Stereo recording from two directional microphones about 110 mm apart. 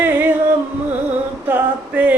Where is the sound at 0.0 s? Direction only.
15° right (ahead or behind).